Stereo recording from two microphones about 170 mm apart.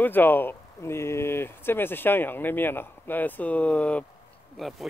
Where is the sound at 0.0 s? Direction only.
10° left (ahead or behind).